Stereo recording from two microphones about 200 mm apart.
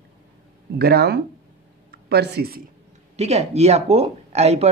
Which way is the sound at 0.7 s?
50° right (ahead or behind).